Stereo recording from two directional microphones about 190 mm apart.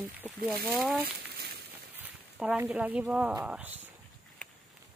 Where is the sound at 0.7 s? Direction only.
Centre (ahead or behind).